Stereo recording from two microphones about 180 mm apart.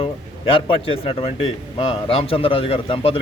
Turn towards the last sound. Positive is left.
turn(degrees=30)  # may be behind; listen again after turning